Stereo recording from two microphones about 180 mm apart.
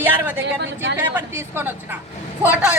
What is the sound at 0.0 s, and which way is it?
Speech, 10° right (ahead or behind).